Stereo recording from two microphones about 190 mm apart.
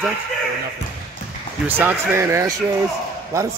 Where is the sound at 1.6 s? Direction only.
10° right (ahead or behind).